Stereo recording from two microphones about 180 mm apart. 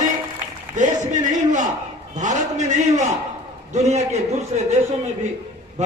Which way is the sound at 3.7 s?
40° right (ahead or behind).